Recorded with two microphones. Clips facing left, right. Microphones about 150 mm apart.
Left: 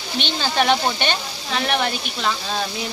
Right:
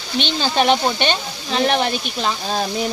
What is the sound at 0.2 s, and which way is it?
Speech, 20° right (ahead or behind).